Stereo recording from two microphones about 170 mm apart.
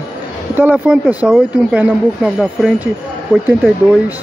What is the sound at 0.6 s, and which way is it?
Speech, 10° right (ahead or behind).